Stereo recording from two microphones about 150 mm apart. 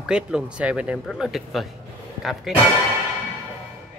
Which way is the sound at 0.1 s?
5° right (ahead or behind).